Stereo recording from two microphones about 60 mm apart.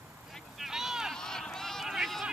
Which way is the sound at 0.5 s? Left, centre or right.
Centre.